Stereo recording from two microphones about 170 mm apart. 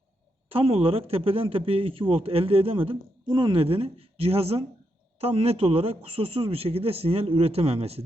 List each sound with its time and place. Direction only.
0.5 s speech: 35° right (ahead or behind)